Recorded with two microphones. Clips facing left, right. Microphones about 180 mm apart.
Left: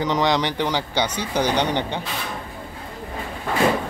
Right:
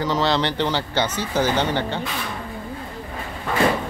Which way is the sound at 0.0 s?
15° left (ahead or behind).